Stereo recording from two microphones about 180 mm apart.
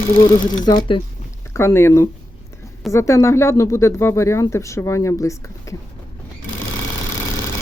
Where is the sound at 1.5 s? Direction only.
15° left (ahead or behind).